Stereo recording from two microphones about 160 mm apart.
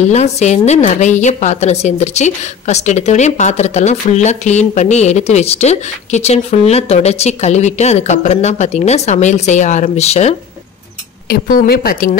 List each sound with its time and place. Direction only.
0.1 s a woman's voice: 45° left (ahead or behind)
11.2 s speech: 65° left (ahead or behind)